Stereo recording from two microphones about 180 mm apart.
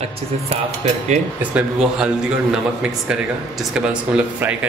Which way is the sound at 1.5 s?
5° right (ahead or behind).